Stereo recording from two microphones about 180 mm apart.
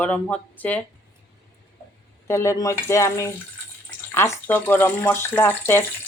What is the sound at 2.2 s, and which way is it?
Speech, 15° left (ahead or behind).